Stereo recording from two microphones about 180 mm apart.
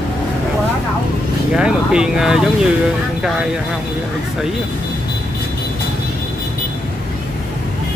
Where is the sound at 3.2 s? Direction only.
5° right (ahead or behind).